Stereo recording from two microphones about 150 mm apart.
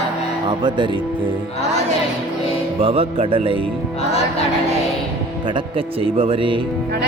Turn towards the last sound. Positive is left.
turn(degrees=-35)  # may be behind; listen again after turning